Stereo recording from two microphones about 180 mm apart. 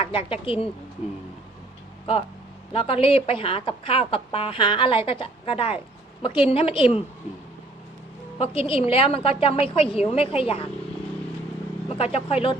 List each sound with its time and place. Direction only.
0.0 s a woman's voice: 30° left (ahead or behind)
2.7 s a woman's voice: 30° left (ahead or behind)
8.4 s a woman's voice: 30° left (ahead or behind)
11.9 s a woman's voice: 35° left (ahead or behind)